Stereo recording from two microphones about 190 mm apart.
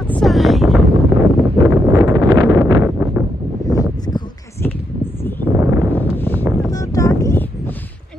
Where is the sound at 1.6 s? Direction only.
15° right (ahead or behind).